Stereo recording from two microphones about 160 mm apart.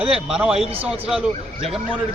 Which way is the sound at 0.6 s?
35° right (ahead or behind).